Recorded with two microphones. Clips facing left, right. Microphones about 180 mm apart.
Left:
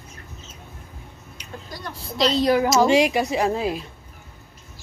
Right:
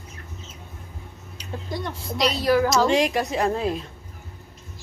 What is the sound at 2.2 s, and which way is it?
Speech, 25° left (ahead or behind).